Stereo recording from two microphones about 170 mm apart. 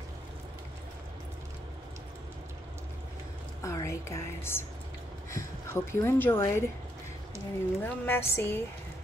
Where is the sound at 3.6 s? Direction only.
15° left (ahead or behind).